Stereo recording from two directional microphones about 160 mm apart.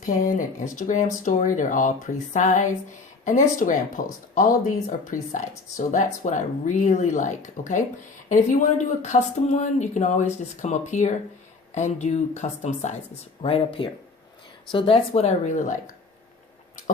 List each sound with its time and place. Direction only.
0.0 s speech: 55° left (ahead or behind); by 13.5 s 40° left (ahead or behind)
13.8 s speech: 30° left (ahead or behind); by 15.7 s 50° left (ahead or behind)